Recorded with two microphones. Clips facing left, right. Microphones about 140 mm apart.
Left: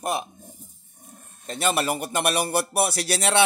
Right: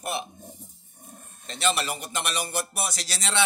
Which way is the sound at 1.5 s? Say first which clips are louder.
Left 3 dB; 50° left (ahead or behind).